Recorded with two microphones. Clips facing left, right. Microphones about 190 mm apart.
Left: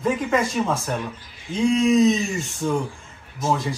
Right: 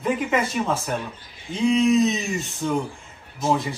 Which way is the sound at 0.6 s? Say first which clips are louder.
Left 1 dB; centre (ahead or behind).